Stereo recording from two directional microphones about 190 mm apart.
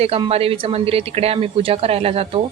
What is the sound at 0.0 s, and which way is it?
A woman's voice, 30° right (ahead or behind).